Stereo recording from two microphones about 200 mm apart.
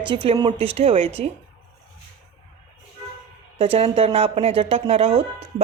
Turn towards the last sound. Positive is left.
turn(degrees=-30)  # may be behind; listen again after turning